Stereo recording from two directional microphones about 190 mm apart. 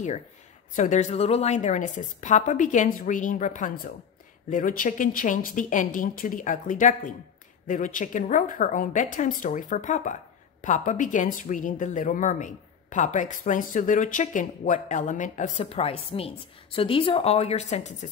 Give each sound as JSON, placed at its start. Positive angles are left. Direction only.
{"t": 0.7, "sound": "a woman's voice", "side_deg": 40}